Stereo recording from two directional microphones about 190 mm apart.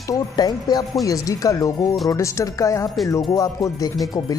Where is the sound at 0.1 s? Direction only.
20° left (ahead or behind).